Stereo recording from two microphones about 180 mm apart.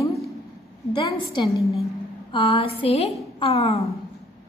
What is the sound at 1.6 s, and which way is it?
Speech, centre (ahead or behind).